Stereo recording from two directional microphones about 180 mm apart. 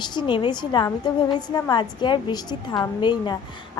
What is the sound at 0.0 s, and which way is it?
A woman's voice, 25° left (ahead or behind).